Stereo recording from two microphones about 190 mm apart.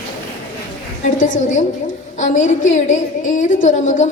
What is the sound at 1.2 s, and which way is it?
A woman's voice, 45° left (ahead or behind).